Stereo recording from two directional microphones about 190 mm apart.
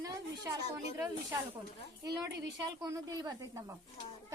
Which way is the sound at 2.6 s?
20° right (ahead or behind).